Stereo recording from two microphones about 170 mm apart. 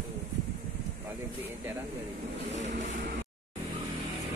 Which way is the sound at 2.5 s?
45° right (ahead or behind).